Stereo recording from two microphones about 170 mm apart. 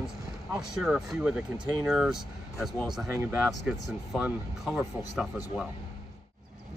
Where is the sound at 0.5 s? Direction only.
5° right (ahead or behind).